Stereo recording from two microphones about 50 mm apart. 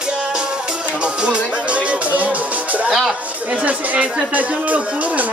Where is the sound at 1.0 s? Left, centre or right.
Right.